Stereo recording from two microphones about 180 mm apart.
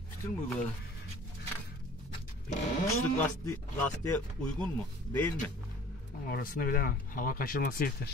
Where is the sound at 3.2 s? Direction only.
10° left (ahead or behind).